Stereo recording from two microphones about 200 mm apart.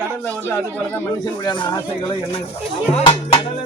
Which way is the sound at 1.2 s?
20° left (ahead or behind).